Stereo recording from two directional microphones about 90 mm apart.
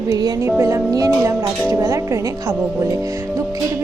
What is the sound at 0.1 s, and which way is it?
Speech, 45° right (ahead or behind).